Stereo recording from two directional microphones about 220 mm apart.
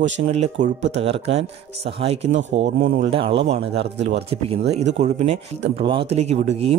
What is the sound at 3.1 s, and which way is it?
Speech, 25° right (ahead or behind).